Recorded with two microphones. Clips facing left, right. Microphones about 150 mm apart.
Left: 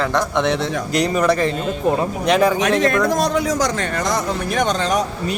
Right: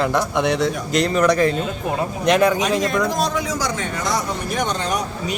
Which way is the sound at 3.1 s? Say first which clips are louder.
Left 4 dB; 60° left (ahead or behind).